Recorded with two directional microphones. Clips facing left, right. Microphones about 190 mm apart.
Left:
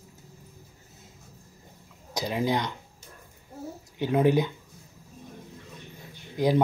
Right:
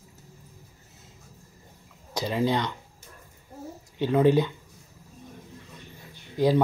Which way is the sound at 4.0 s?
15° left (ahead or behind).